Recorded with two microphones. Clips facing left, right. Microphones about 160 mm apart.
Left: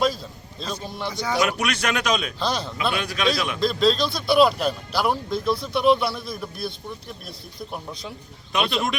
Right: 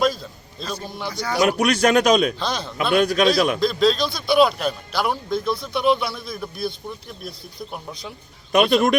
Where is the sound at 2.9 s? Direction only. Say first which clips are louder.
Right 10 dB; 40° right (ahead or behind).